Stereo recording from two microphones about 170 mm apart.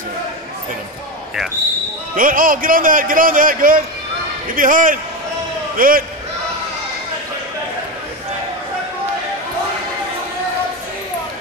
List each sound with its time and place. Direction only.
2.1 s a man's voice: 55° right (ahead or behind)